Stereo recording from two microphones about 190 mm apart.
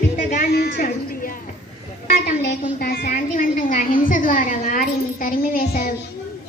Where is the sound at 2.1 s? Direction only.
45° left (ahead or behind).